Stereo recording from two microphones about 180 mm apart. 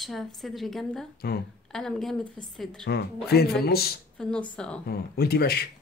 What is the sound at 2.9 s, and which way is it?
Speech, 65° left (ahead or behind).